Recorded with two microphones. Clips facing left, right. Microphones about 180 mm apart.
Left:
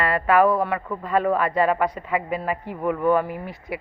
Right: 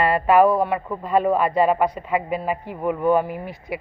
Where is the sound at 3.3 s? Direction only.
30° left (ahead or behind).